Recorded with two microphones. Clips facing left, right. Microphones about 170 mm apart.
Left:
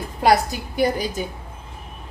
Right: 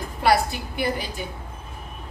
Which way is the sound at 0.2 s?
40° left (ahead or behind).